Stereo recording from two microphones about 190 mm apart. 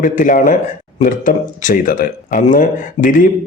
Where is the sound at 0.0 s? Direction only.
45° left (ahead or behind).